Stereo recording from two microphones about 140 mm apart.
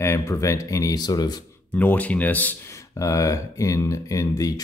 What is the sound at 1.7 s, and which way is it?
Speech, 10° left (ahead or behind).